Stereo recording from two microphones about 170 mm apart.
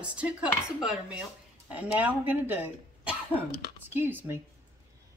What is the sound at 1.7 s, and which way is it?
Speech, 10° right (ahead or behind).